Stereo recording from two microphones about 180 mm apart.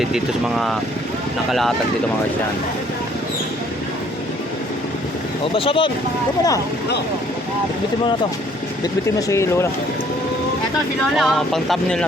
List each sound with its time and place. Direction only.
0.0 s speech: centre (ahead or behind)
5.5 s speech: 30° left (ahead or behind)
9.1 s speech: 15° left (ahead or behind)
11.2 s speech: centre (ahead or behind)